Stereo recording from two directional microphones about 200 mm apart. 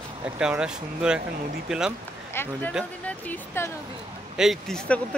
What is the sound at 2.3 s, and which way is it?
Speech, 10° left (ahead or behind).